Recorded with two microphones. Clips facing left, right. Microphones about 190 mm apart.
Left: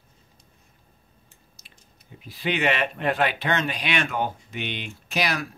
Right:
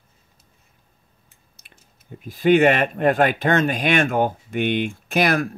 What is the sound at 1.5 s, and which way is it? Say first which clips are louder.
Speech: even; 50° right (ahead or behind).